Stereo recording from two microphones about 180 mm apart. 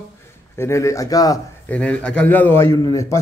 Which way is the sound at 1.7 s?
10° left (ahead or behind).